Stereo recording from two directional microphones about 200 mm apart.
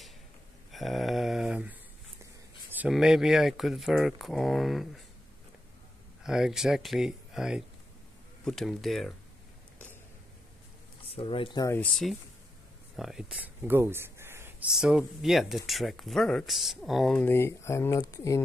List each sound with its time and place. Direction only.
0.7 s mantra: centre (ahead or behind)
2.7 s speech: 5° right (ahead or behind)
6.2 s speech: 5° right (ahead or behind)
11.1 s speech: 25° left (ahead or behind)